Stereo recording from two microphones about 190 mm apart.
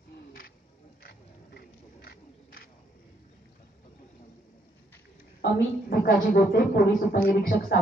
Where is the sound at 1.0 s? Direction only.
55° left (ahead or behind).